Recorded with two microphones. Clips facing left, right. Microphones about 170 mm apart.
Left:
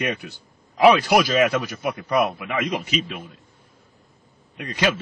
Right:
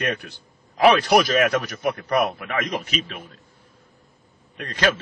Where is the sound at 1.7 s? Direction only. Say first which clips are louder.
Even; 55° right (ahead or behind).